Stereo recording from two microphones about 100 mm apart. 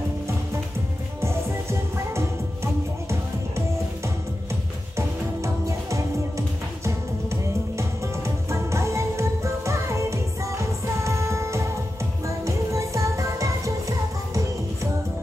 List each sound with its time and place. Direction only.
1.2 s music: 30° right (ahead or behind)